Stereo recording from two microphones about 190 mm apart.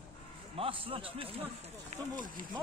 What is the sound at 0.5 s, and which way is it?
Speech, 30° right (ahead or behind).